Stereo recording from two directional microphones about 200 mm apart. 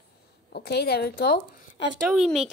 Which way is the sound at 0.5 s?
55° left (ahead or behind).